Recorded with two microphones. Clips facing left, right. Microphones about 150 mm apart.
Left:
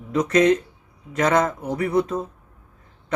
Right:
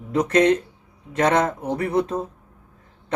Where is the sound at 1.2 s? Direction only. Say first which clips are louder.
Even; 30° right (ahead or behind).